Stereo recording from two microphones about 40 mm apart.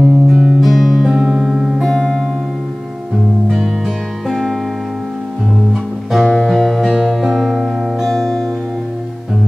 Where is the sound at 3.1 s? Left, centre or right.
Centre.